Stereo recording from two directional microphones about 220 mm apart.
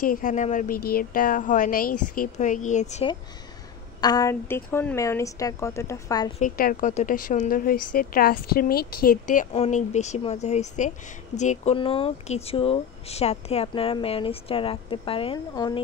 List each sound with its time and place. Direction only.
0.0 s a woman's voice: 40° left (ahead or behind)
4.0 s a woman's voice: 15° left (ahead or behind)
6.4 s a woman's voice: 40° left (ahead or behind); by 15.8 s 20° left (ahead or behind)